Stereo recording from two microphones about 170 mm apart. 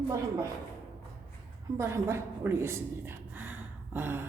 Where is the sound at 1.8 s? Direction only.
15° right (ahead or behind).